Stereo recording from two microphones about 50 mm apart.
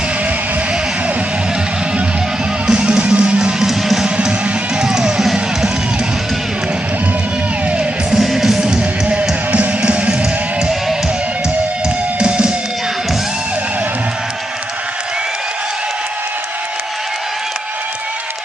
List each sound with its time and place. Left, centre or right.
2.6 s music: centre
8.1 s music: centre
9.5 s music: right
10.6 s music: centre
12.2 s music: centre